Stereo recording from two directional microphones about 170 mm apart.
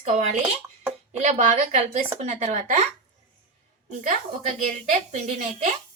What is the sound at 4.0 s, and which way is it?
Speech, 45° right (ahead or behind).